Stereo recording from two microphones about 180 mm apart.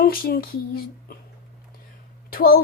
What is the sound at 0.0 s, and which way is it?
Speech, 55° left (ahead or behind).